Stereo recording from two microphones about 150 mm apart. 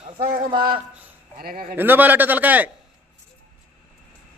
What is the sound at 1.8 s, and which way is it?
Speech, 10° right (ahead or behind).